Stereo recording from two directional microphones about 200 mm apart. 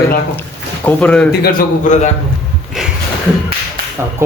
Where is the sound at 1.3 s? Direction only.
50° left (ahead or behind).